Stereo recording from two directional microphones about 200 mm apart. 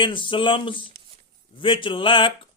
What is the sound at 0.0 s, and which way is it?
A man's voice, 25° left (ahead or behind).